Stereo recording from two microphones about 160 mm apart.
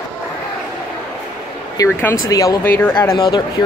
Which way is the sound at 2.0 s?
15° left (ahead or behind).